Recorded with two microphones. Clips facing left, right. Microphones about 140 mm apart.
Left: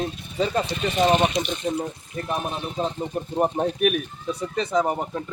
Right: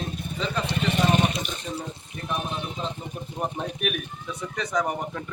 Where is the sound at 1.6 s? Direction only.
40° left (ahead or behind); by 5.2 s 25° left (ahead or behind).